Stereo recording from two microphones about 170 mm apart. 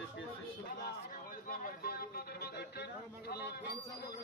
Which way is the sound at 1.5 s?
60° left (ahead or behind).